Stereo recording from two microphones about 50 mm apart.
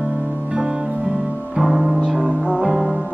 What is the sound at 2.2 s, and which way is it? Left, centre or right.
Music, right.